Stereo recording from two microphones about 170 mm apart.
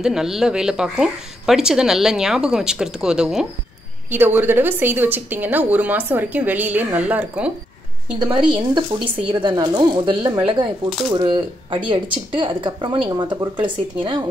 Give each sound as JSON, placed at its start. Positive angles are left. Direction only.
{"t": 0.0, "sound": "a woman's voice", "side_deg": -5}
{"t": 8.2, "sound": "speech", "side_deg": -25}